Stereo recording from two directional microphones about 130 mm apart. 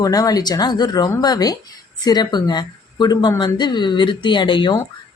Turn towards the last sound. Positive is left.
turn(degrees=35)  # may be behind; listen again after turning